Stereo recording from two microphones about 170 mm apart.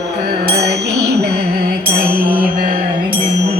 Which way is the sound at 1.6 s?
60° right (ahead or behind).